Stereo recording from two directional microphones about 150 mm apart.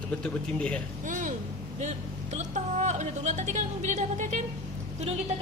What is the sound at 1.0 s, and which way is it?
Speech, 60° right (ahead or behind).